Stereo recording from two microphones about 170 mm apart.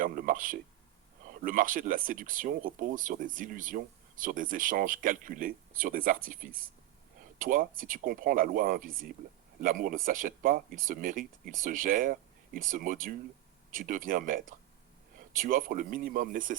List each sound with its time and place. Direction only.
0.0 s speech: 50° right (ahead or behind)